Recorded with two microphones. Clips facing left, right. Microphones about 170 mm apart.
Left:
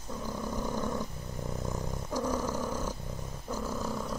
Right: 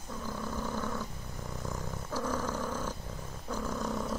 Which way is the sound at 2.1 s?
15° left (ahead or behind).